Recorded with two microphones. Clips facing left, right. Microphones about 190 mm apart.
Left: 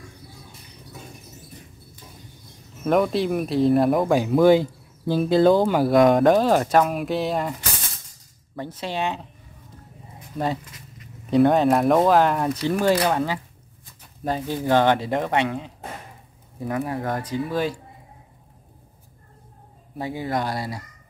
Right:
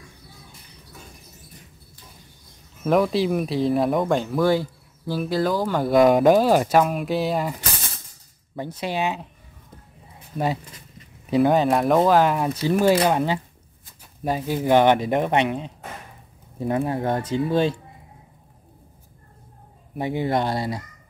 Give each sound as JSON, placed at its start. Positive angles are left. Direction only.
{"t": 2.8, "sound": "speech", "side_deg": 0}
{"t": 4.3, "sound": "speech", "side_deg": 20}
{"t": 5.8, "sound": "speech", "side_deg": 0}
{"t": 8.5, "sound": "speech", "side_deg": -15}
{"t": 10.3, "sound": "speech", "side_deg": -10}
{"t": 13.1, "sound": "speech", "side_deg": -20}
{"t": 20.0, "sound": "speech", "side_deg": -25}